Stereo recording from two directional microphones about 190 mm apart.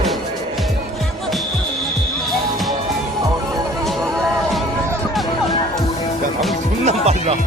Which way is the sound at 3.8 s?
Centre (ahead or behind).